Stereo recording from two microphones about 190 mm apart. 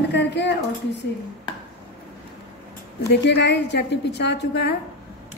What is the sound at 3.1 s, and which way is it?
A woman's voice, 65° left (ahead or behind).